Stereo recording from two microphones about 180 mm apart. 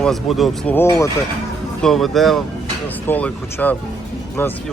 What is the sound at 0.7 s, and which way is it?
Speech, 15° left (ahead or behind).